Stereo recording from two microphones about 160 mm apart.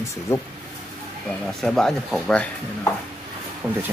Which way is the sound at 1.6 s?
5° left (ahead or behind).